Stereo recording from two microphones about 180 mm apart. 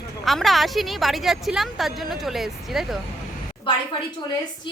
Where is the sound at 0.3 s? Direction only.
Centre (ahead or behind).